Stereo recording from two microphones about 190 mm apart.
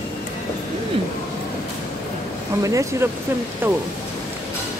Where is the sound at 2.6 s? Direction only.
15° right (ahead or behind).